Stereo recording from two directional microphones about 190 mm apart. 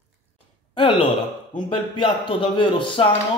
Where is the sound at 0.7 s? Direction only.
25° left (ahead or behind).